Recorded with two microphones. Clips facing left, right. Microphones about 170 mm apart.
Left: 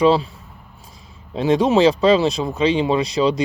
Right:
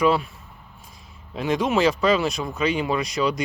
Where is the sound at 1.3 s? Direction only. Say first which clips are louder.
Left 6 dB; 30° left (ahead or behind).